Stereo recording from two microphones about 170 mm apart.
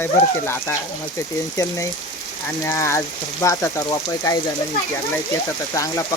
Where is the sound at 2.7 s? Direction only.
15° left (ahead or behind).